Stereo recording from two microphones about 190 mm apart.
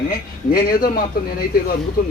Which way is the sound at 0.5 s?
50° left (ahead or behind).